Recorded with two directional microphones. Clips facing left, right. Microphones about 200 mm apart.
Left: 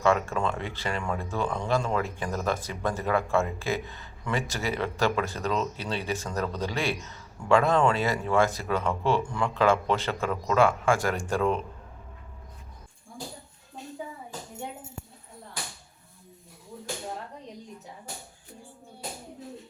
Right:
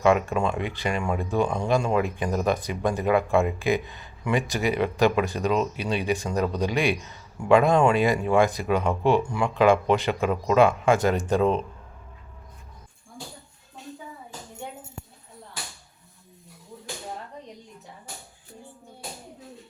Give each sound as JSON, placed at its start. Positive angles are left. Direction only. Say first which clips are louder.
{"t": 0.0, "sound": "speech", "louder": "right 4 dB", "side_deg": -15}